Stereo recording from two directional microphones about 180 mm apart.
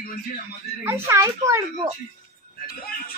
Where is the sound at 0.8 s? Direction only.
15° right (ahead or behind).